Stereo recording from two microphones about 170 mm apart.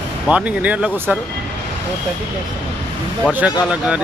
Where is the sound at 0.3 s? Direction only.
5° right (ahead or behind).